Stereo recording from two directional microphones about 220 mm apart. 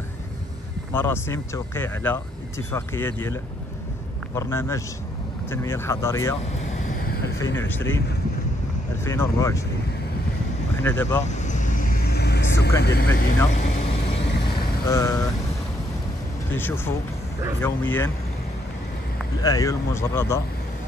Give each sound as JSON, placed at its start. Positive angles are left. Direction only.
{"t": 0.9, "sound": "speech", "side_deg": 10}
{"t": 4.4, "sound": "speech", "side_deg": 10}
{"t": 6.5, "sound": "vehicle", "side_deg": 35}
{"t": 7.5, "sound": "speech", "side_deg": 10}
{"t": 9.0, "sound": "speech", "side_deg": 10}
{"t": 10.8, "sound": "speech", "side_deg": 10}
{"t": 11.2, "sound": "vehicle", "side_deg": 35}
{"t": 14.9, "sound": "speech", "side_deg": 15}
{"t": 16.5, "sound": "speech", "side_deg": 10}
{"t": 19.4, "sound": "speech", "side_deg": 15}